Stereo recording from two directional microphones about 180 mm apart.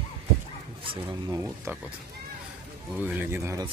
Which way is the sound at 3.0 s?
10° right (ahead or behind).